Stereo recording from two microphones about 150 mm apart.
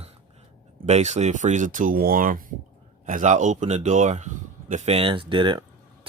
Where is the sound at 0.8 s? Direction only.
50° right (ahead or behind); by 5.6 s 35° right (ahead or behind).